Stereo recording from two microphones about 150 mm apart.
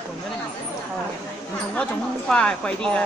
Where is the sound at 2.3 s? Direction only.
5° left (ahead or behind).